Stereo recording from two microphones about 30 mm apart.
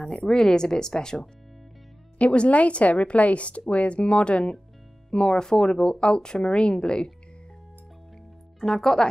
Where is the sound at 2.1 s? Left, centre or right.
Left.